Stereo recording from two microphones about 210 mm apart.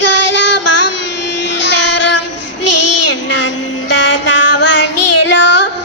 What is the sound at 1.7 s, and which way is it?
Child singing, 60° left (ahead or behind).